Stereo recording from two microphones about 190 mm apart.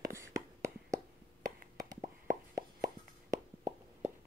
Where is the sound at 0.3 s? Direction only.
15° right (ahead or behind).